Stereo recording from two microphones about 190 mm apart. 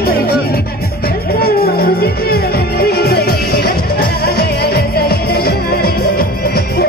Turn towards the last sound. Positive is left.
turn(degrees=55)  # may be behind; listen again after turning